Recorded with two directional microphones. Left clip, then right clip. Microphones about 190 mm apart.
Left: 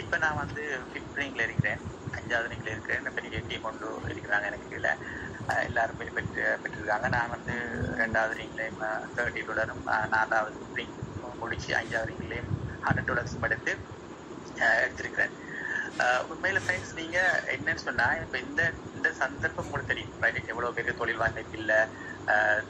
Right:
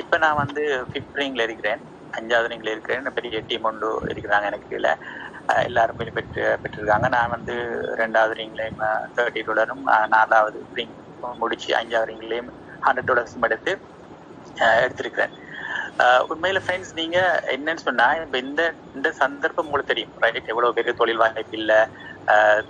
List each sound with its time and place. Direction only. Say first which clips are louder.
0.1 s a man's voice: right 10 dB; 40° right (ahead or behind)